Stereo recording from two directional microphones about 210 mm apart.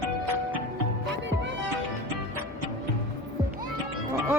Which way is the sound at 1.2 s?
60° right (ahead or behind).